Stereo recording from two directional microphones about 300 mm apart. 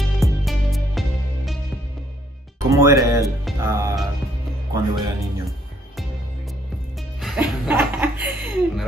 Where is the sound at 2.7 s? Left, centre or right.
Centre.